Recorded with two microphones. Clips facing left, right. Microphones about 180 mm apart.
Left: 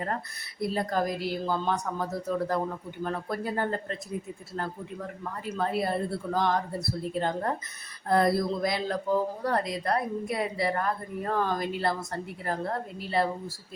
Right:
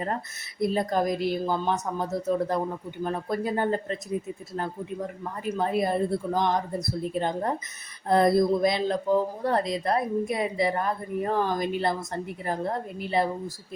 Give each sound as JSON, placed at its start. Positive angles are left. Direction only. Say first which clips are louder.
{"t": 0.6, "sound": "speech", "louder": "right 3 dB", "side_deg": -20}